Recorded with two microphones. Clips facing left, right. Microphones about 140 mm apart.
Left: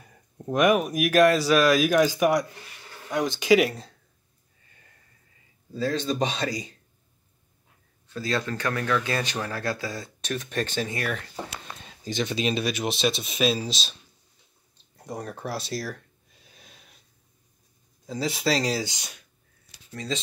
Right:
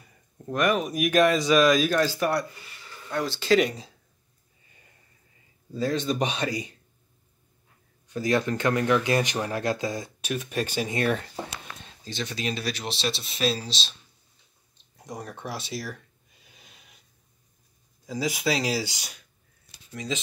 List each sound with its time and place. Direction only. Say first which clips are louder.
0.5 s speech: left 3 dB; 15° left (ahead or behind)
8.1 s speech: right 4 dB; 20° right (ahead or behind)
10.2 s speech: left 1 dB; 10° right (ahead or behind)
11.0 s speech: right 5 dB; 30° right (ahead or behind)
11.8 s speech: left 6 dB; 15° left (ahead or behind)
15.0 s speech: left 3 dB; centre (ahead or behind)
16.4 s a sound: left 2 dB; 5° right (ahead or behind)
18.1 s speech: left 1 dB; 5° right (ahead or behind)
18.8 s speech: even; 20° left (ahead or behind)
19.9 s speech: even; 10° right (ahead or behind)